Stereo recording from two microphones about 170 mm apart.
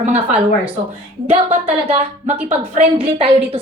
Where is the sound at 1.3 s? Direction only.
40° right (ahead or behind).